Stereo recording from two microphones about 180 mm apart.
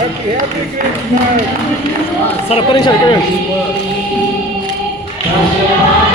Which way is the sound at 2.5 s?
25° left (ahead or behind).